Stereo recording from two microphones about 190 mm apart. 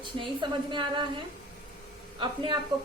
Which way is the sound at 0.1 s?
30° right (ahead or behind).